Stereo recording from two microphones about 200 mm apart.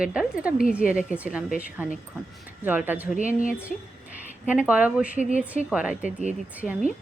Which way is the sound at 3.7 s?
40° left (ahead or behind).